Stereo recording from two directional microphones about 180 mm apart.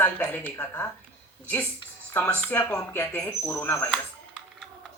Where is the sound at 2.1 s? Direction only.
10° left (ahead or behind).